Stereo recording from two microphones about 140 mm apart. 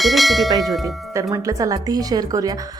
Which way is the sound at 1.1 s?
25° right (ahead or behind).